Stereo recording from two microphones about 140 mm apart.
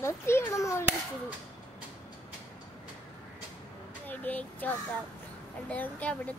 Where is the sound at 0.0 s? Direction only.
20° left (ahead or behind).